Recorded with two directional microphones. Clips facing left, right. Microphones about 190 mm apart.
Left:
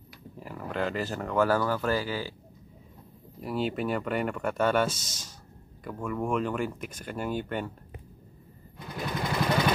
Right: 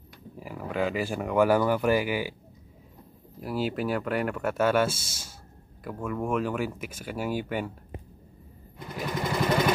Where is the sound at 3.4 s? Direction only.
Centre (ahead or behind).